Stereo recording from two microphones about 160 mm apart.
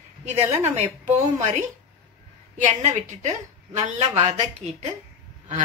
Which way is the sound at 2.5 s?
45° right (ahead or behind).